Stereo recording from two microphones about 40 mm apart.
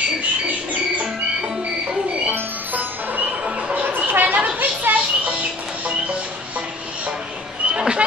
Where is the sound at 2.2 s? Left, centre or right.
Right.